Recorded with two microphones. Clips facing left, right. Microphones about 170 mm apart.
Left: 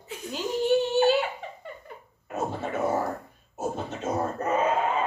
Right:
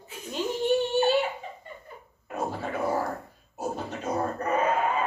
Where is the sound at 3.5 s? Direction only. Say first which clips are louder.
Left 1 dB; 25° left (ahead or behind).